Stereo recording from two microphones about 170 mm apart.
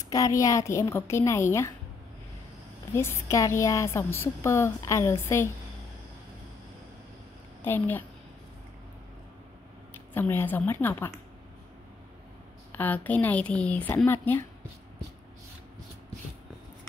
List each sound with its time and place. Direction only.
0.0 s a woman's voice: 20° left (ahead or behind)
2.9 s a woman's voice: 15° left (ahead or behind)
7.6 s a woman's voice: 10° left (ahead or behind)
9.9 s a woman's voice: 10° left (ahead or behind)
12.7 s a woman's voice: 10° left (ahead or behind)